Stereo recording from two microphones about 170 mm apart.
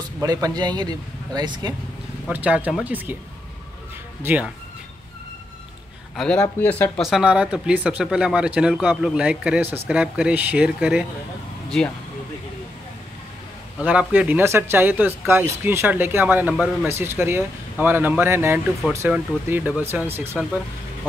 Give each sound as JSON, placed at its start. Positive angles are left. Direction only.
{"t": 0.2, "sound": "speech", "side_deg": -20}
{"t": 2.2, "sound": "speech", "side_deg": -10}
{"t": 4.2, "sound": "speech", "side_deg": -10}
{"t": 6.1, "sound": "speech", "side_deg": 5}
{"t": 7.0, "sound": "speech", "side_deg": 0}
{"t": 13.7, "sound": "speech", "side_deg": -5}